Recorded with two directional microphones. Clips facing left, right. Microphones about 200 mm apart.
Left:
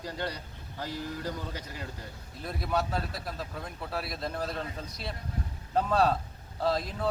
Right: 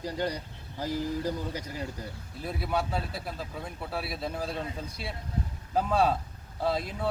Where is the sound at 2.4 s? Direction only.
5° right (ahead or behind).